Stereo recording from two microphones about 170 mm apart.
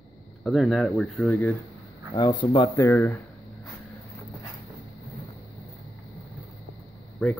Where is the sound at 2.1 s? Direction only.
25° left (ahead or behind).